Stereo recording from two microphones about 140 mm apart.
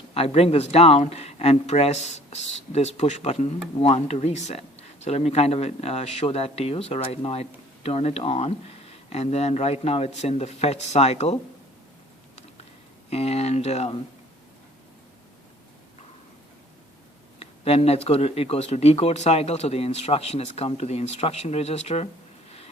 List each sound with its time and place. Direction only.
0.1 s speech: 45° left (ahead or behind)
13.1 s speech: 50° left (ahead or behind)
17.4 s speech: 45° left (ahead or behind)